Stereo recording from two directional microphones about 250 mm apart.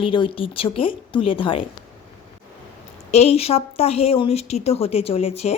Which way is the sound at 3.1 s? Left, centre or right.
Left.